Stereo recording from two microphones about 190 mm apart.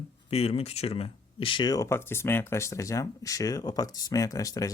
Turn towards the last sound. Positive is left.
turn(degrees=20)  # may be behind; listen again after turning